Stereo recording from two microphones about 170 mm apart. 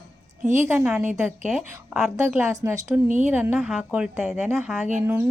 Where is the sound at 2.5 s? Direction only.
15° right (ahead or behind).